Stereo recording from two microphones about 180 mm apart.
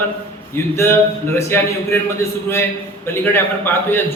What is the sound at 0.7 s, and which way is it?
Speech, 15° left (ahead or behind).